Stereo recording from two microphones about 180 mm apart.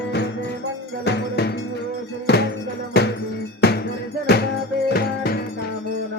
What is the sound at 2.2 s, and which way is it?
Music, 65° left (ahead or behind).